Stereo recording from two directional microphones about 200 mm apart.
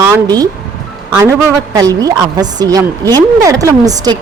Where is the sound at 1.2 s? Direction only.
15° right (ahead or behind).